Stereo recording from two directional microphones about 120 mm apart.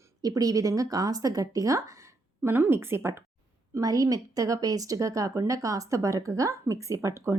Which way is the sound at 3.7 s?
30° right (ahead or behind).